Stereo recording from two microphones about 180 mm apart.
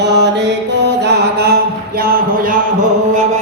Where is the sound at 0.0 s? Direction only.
75° right (ahead or behind).